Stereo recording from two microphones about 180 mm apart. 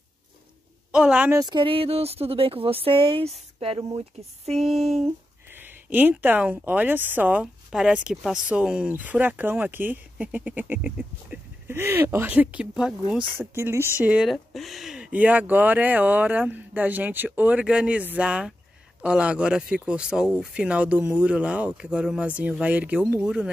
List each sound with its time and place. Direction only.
0.9 s speech: 5° right (ahead or behind)
1.4 s speech: 25° right (ahead or behind)
4.6 s speech: centre (ahead or behind)
5.5 s speech: 10° right (ahead or behind)